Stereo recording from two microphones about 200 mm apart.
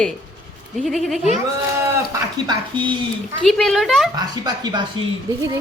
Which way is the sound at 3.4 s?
Centre (ahead or behind).